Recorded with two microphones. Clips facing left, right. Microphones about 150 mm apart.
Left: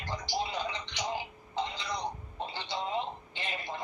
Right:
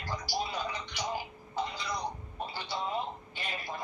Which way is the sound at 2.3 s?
20° left (ahead or behind).